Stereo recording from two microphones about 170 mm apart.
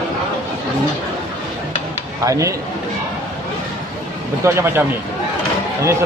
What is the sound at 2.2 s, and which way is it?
Speech, 20° right (ahead or behind).